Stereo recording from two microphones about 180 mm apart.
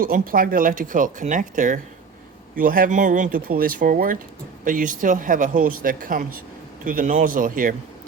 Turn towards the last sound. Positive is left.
turn(degrees=-50)  # may be behind; listen again after turning